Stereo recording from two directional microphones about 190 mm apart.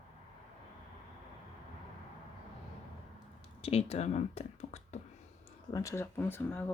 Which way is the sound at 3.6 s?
30° left (ahead or behind).